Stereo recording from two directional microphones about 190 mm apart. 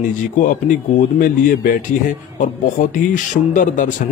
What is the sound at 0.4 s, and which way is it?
Speech, 45° left (ahead or behind).